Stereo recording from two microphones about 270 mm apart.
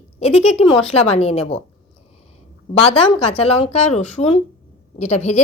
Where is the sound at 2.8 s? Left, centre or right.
Left.